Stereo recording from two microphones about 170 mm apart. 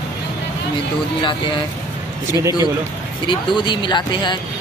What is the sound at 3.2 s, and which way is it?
Speech, 25° left (ahead or behind).